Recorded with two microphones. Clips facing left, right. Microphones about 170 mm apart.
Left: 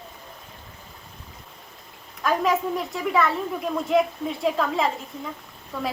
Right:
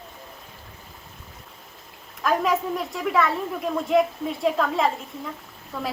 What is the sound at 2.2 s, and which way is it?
A woman's voice, centre (ahead or behind).